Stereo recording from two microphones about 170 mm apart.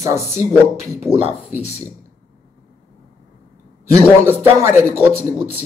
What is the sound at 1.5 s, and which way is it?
Speech, 40° left (ahead or behind).